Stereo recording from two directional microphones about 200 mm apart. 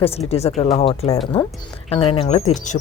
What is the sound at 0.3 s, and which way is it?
A woman's voice, 30° left (ahead or behind).